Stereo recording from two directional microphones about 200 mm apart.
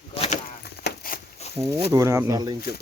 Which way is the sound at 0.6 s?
50° left (ahead or behind).